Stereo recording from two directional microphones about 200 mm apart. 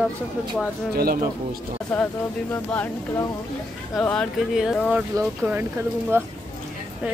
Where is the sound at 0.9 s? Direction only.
50° right (ahead or behind).